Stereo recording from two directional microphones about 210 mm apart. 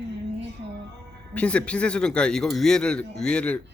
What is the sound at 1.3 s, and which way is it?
Speech, 5° left (ahead or behind).